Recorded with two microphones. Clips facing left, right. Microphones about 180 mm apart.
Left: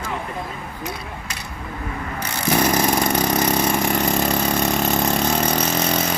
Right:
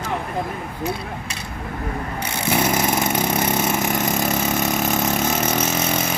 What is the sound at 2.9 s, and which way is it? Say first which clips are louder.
Vehicle: left 1 dB; 10° right (ahead or behind).